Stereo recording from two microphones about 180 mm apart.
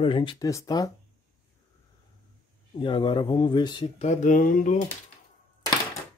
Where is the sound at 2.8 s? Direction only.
25° left (ahead or behind); by 4.8 s 45° left (ahead or behind).